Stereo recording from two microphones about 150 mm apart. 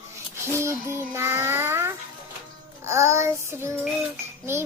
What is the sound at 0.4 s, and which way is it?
Child singing, 20° right (ahead or behind).